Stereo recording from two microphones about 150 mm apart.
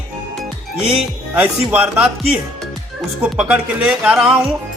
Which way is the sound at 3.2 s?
5° right (ahead or behind).